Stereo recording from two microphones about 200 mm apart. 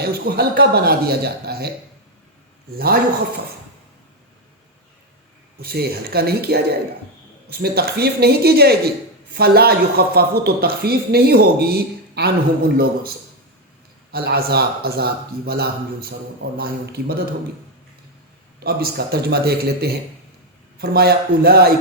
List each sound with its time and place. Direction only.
0.0 s speech: 50° right (ahead or behind)
2.7 s speech: 50° right (ahead or behind)
5.6 s speech: 50° right (ahead or behind)
14.1 s speech: 50° right (ahead or behind)
18.6 s speech: 50° right (ahead or behind)